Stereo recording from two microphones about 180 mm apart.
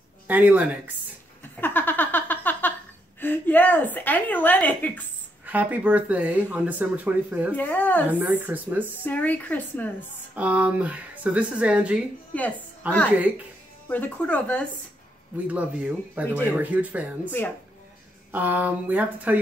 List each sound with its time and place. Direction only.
0.3 s a woman's voice: 10° right (ahead or behind)
1.6 s a sound: 10° left (ahead or behind)
3.2 s a woman's voice: 10° left (ahead or behind)
5.4 s speech: 10° right (ahead or behind)
7.5 s a woman's voice: 10° left (ahead or behind)
8.1 s speech: 10° right (ahead or behind)
9.0 s a woman's voice: 10° left (ahead or behind)
10.3 s speech: 10° right (ahead or behind)
13.8 s a woman's voice: 10° left (ahead or behind)
15.4 s speech: 5° right (ahead or behind)
18.3 s speech: 10° right (ahead or behind)